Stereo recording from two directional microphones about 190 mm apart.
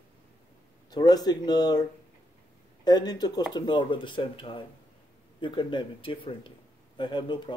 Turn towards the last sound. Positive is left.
turn(degrees=25)  # may be behind; listen again after turning